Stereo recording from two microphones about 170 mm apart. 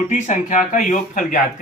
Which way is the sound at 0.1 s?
45° left (ahead or behind).